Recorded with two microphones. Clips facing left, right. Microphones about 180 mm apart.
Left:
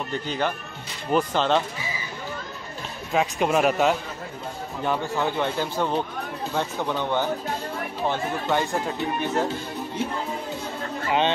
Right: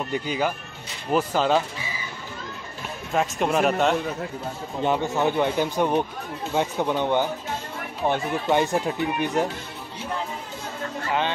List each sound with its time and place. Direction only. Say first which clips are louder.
0.1 s a man's voice: right 1 dB; 10° right (ahead or behind)
3.1 s a man's voice: left 1 dB; centre (ahead or behind)
4.8 s speech: right 3 dB; 20° right (ahead or behind)
11.1 s speech: left 3 dB; 20° left (ahead or behind)